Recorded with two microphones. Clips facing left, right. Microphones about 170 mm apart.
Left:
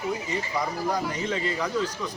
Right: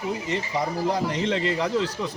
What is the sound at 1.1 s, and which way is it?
Speech, 70° right (ahead or behind).